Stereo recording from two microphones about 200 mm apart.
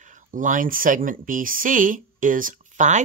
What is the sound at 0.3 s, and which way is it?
Speech, 40° right (ahead or behind).